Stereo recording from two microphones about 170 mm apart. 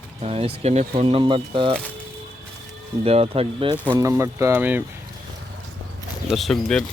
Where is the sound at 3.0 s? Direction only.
35° right (ahead or behind).